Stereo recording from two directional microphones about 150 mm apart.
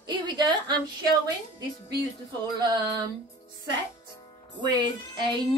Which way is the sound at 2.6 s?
30° right (ahead or behind).